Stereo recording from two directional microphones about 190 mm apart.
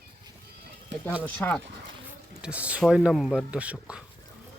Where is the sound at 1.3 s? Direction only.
10° left (ahead or behind).